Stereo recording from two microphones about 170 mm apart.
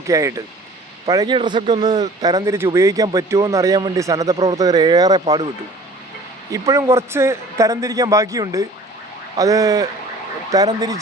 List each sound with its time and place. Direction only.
0.1 s speech: 20° right (ahead or behind)
6.5 s a man's voice: 20° right (ahead or behind)